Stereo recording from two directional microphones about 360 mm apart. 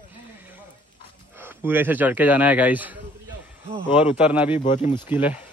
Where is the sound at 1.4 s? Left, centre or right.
Centre.